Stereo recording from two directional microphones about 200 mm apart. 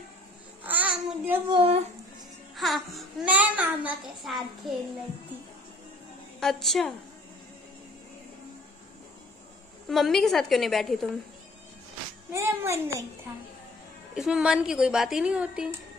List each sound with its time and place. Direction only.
0.7 s child singing: 10° right (ahead or behind)
1.5 s speech: 25° right (ahead or behind)
2.5 s speech: centre (ahead or behind)
6.4 s speech: centre (ahead or behind)
9.8 s speech: centre (ahead or behind)
12.3 s a child's voice: 15° right (ahead or behind)
14.1 s speech: 5° right (ahead or behind)